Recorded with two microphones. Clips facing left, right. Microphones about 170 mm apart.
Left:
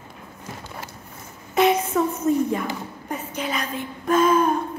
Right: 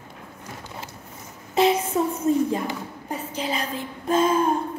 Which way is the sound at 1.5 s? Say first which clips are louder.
Left 1 dB; 30° right (ahead or behind).